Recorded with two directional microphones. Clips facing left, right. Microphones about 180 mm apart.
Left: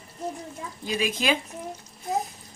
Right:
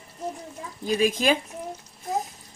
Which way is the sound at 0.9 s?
45° right (ahead or behind).